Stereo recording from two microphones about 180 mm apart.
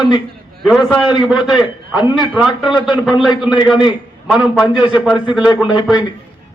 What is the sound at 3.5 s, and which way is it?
Speech, 25° left (ahead or behind).